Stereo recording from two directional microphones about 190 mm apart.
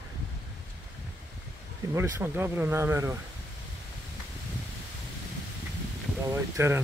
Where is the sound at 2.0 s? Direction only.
15° right (ahead or behind).